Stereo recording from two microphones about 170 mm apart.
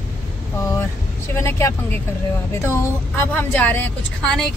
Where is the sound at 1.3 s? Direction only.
15° left (ahead or behind).